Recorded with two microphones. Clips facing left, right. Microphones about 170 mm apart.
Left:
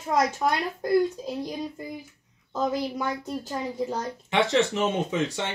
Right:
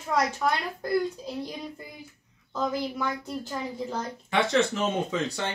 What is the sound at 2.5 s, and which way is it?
Speech, 20° left (ahead or behind).